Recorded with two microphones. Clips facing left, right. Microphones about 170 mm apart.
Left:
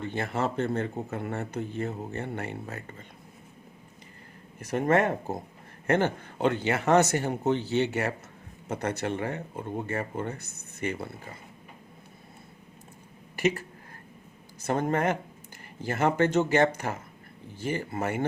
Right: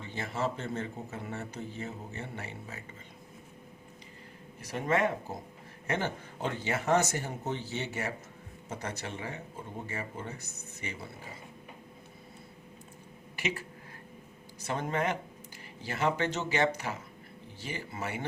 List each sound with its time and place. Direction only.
0.0 s speech: 60° left (ahead or behind)
4.6 s speech: 50° left (ahead or behind)
13.3 s speech: 45° left (ahead or behind)